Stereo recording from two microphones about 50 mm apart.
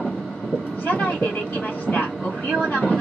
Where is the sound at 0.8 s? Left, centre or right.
Left.